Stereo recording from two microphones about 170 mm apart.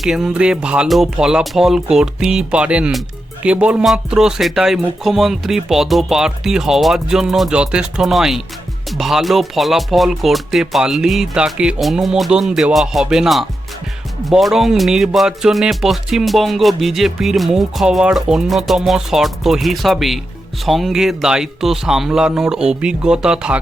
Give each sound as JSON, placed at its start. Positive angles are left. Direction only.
{"t": 0.0, "sound": "speech", "side_deg": 0}